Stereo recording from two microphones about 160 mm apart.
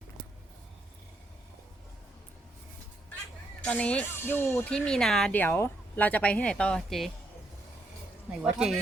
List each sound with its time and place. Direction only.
3.6 s speech: 5° left (ahead or behind)
4.7 s speech: 5° left (ahead or behind)
8.3 s speech: 5° right (ahead or behind)